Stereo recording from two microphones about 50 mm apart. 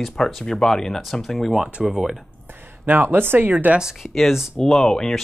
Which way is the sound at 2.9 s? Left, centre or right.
Right.